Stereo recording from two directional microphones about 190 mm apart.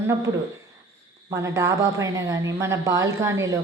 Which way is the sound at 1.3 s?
15° right (ahead or behind).